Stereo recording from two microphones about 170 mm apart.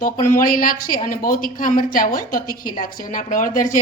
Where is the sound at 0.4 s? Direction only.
55° left (ahead or behind).